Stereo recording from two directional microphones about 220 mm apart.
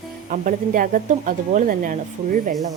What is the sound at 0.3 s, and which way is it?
A woman's voice, 40° right (ahead or behind).